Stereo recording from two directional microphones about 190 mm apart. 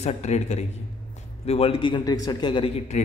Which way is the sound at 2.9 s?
35° left (ahead or behind).